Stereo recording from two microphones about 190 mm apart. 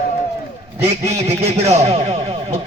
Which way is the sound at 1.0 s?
35° right (ahead or behind).